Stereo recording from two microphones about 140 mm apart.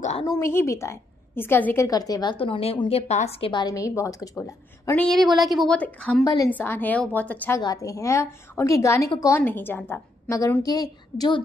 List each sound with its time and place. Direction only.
0.4 s a woman's voice: 20° left (ahead or behind)
1.9 s a woman's voice: 25° left (ahead or behind)
2.3 s a woman's voice: 40° left (ahead or behind)
3.6 s a woman's voice: 25° left (ahead or behind)
4.9 s a woman's voice: 5° left (ahead or behind)
5.8 s a woman's voice: 10° left (ahead or behind)
6.2 s a woman's voice: 25° left (ahead or behind)
6.5 s a woman's voice: 15° left (ahead or behind)
7.6 s a woman's voice: 25° left (ahead or behind)
10.6 s a woman's voice: 25° left (ahead or behind)